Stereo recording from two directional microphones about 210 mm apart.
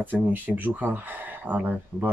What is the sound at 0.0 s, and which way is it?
Speech, 10° right (ahead or behind).